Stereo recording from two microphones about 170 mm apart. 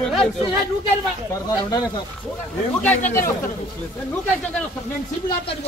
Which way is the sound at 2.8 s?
10° left (ahead or behind).